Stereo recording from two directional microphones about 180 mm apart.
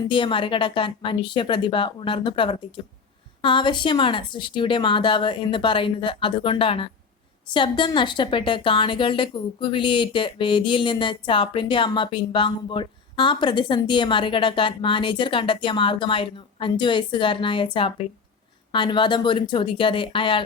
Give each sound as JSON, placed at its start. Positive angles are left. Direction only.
{"t": 0.1, "sound": "a woman's voice", "side_deg": 25}